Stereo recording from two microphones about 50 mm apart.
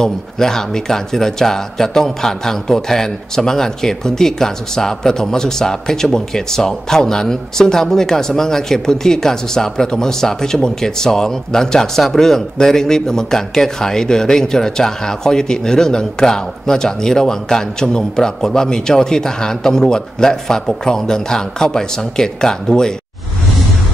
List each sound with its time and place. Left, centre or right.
0.0 s speech: centre